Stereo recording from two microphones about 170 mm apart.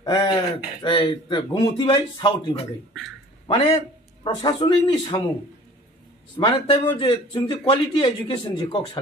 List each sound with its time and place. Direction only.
0.0 s a man's voice: 30° left (ahead or behind)
6.3 s a man's voice: 25° left (ahead or behind)